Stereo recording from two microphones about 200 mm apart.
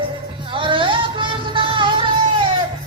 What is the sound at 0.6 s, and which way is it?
Music, 25° right (ahead or behind).